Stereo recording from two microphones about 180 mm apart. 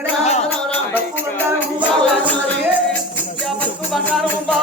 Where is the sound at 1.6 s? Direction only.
5° left (ahead or behind).